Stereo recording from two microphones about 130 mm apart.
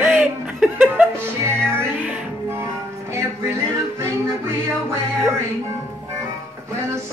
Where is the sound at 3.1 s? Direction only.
20° right (ahead or behind).